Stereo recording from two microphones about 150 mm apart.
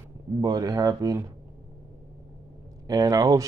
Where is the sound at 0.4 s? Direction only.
25° right (ahead or behind).